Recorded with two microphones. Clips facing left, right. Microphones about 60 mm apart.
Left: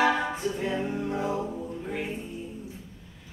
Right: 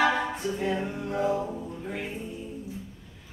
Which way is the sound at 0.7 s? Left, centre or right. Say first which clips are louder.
Left 1 dB; centre.